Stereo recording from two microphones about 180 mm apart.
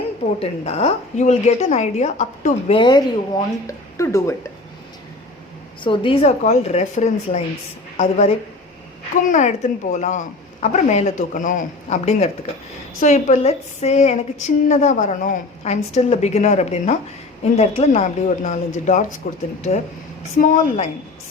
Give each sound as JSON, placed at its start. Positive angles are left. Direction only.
{"t": 0.3, "sound": "a woman's voice", "side_deg": 35}
{"t": 2.7, "sound": "speech", "side_deg": 25}
{"t": 5.8, "sound": "a woman's voice", "side_deg": 30}
{"t": 20.4, "sound": "a woman's voice", "side_deg": 45}